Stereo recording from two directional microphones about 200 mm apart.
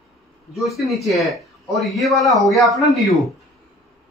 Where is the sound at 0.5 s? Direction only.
Centre (ahead or behind).